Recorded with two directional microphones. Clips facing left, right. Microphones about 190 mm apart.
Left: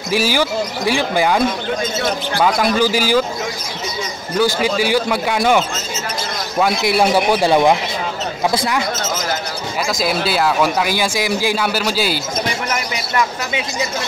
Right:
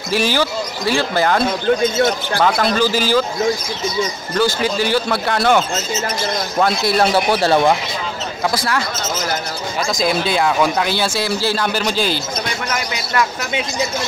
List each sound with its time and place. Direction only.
0.1 s speech: 10° left (ahead or behind)
2.4 s speech: 10° left (ahead or behind)
4.4 s speech: 10° left (ahead or behind)
6.6 s speech: 10° left (ahead or behind)
9.9 s speech: 5° left (ahead or behind)